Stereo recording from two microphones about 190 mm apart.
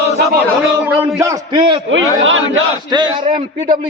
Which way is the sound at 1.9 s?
90° right.